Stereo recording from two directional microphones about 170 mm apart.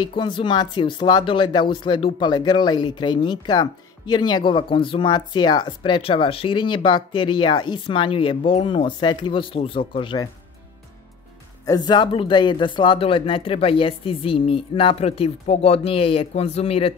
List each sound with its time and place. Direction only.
0.0 s speech: 30° left (ahead or behind)
11.6 s speech: 25° left (ahead or behind)